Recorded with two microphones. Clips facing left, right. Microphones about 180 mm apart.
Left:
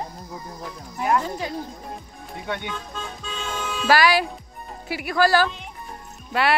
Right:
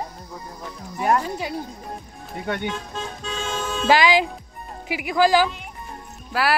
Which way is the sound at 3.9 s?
20° right (ahead or behind).